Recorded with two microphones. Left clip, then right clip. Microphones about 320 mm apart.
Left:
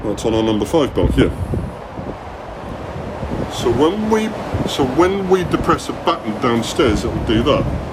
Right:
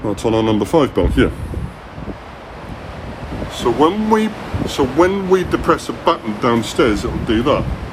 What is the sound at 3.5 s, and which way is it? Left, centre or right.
Speech, centre.